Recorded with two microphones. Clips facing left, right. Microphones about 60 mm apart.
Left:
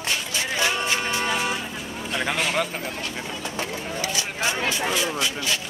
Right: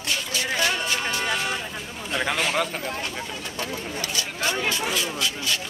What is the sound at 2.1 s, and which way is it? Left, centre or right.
Speech, centre.